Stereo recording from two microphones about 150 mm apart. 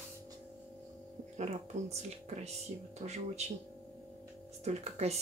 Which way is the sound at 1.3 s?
45° right (ahead or behind).